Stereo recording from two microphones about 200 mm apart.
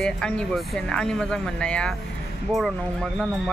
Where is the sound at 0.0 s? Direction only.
5° left (ahead or behind).